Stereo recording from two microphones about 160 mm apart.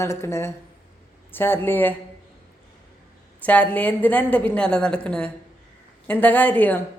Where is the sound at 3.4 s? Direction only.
10° left (ahead or behind).